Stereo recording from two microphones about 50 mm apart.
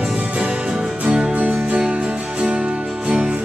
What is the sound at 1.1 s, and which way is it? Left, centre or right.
Music, right.